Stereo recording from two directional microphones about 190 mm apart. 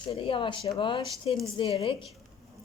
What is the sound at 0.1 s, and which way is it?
A woman's voice, 25° left (ahead or behind).